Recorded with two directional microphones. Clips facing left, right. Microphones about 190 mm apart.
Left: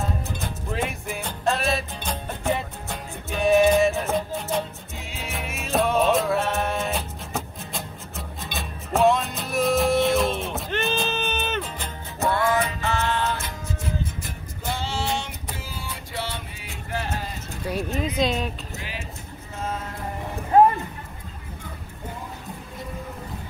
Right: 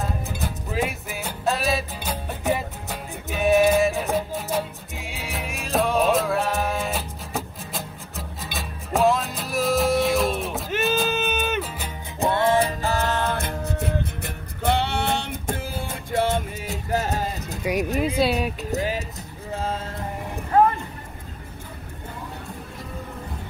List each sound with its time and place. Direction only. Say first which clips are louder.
0.0 s music: right 1 dB; 5° right (ahead or behind)
12.2 s music: right 2 dB; 25° right (ahead or behind); by 17.6 s 40° right (ahead or behind)
17.6 s speech: right 4 dB; 15° right (ahead or behind)
18.7 s music: right 11 dB; 40° right (ahead or behind)
19.5 s a sound: right 3 dB; 30° right (ahead or behind)
20.5 s music: left 2 dB; 20° left (ahead or behind)